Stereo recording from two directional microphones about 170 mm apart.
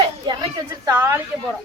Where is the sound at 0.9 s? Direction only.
15° right (ahead or behind).